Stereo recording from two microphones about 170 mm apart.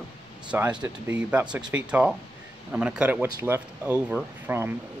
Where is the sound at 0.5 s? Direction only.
5° right (ahead or behind).